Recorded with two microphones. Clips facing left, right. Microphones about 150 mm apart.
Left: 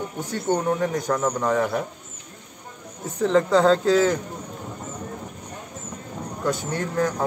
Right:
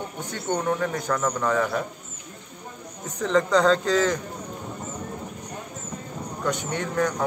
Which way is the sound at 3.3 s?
25° left (ahead or behind).